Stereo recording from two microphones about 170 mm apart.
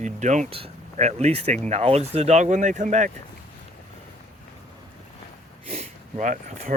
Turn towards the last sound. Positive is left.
turn(degrees=-50)  # may be behind; listen again after turning